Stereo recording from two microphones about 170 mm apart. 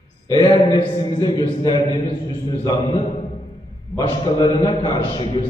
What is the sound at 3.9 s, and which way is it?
A man's voice, 30° left (ahead or behind).